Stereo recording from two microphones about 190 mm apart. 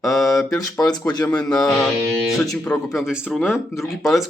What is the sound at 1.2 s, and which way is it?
Speech, 5° left (ahead or behind).